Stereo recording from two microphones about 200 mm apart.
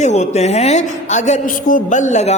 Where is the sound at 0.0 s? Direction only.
35° left (ahead or behind).